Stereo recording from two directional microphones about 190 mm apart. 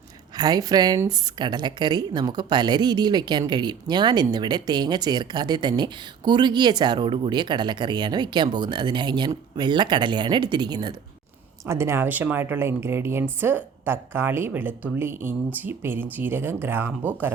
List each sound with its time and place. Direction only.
0.3 s a woman's voice: 20° right (ahead or behind)